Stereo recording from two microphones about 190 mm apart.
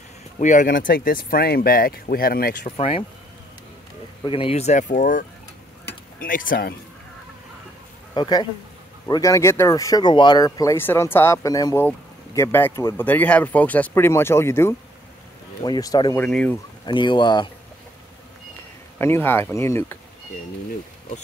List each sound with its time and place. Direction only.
0.4 s speech: 40° left (ahead or behind)
2.8 s speech: 30° left (ahead or behind)
4.2 s speech: 30° left (ahead or behind); by 5.2 s 45° left (ahead or behind)
6.2 s speech: 45° left (ahead or behind)
8.1 s speech: 25° left (ahead or behind)
16.2 s speech: 5° left (ahead or behind)
16.8 s speech: 25° left (ahead or behind)
18.9 s speech: 10° left (ahead or behind)